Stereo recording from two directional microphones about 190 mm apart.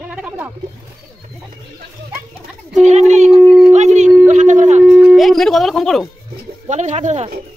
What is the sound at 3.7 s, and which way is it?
Howl, 40° right (ahead or behind).